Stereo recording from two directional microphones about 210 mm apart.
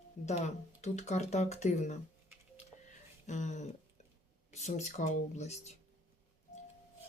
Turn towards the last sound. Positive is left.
turn(degrees=30)  # may be behind; listen again after turning